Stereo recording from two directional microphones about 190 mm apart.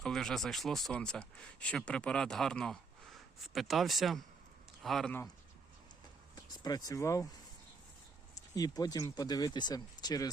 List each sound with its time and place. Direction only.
0.0 s speech: 5° left (ahead or behind)
6.3 s speech: 20° left (ahead or behind)
8.4 s speech: 20° left (ahead or behind)